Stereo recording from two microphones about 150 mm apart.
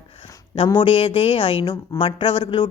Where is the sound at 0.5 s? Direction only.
35° left (ahead or behind).